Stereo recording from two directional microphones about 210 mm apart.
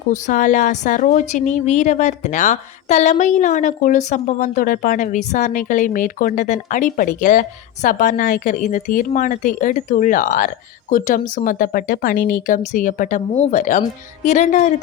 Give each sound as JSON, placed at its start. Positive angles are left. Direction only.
{"t": 0.1, "sound": "a woman's voice", "side_deg": 35}